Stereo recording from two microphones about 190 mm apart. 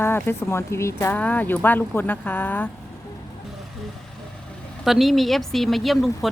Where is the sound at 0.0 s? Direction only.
10° left (ahead or behind).